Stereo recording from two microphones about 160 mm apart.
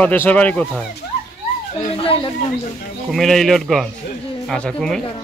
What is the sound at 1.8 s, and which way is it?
Speech, 35° left (ahead or behind).